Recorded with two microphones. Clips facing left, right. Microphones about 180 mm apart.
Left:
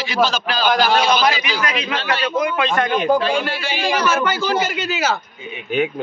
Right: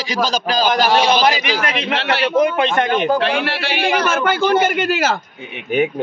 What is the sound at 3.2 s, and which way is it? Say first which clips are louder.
A man's voice: right 1 dB; 70° right (ahead or behind).